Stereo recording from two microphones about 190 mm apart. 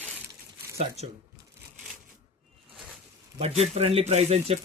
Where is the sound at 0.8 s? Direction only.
35° right (ahead or behind).